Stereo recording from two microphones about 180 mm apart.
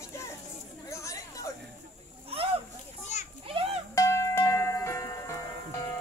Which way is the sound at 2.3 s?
30° right (ahead or behind).